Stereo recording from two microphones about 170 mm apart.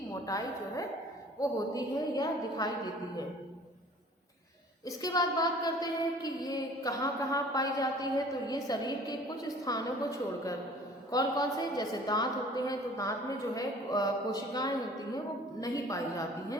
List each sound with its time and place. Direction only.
0.1 s a woman's voice: 20° left (ahead or behind)
4.9 s a woman's voice: 20° left (ahead or behind)